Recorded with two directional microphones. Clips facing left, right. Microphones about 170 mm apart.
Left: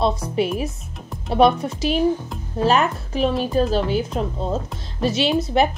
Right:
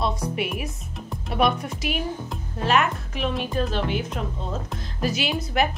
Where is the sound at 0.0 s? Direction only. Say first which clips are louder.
Left 6 dB; 30° left (ahead or behind).